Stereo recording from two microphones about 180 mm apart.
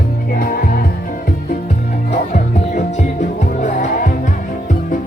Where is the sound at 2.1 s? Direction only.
40° left (ahead or behind).